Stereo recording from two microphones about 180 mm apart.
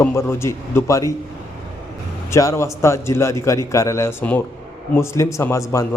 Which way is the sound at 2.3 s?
15° left (ahead or behind).